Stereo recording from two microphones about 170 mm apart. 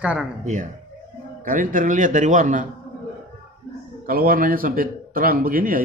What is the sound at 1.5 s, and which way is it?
Speech, 50° right (ahead or behind).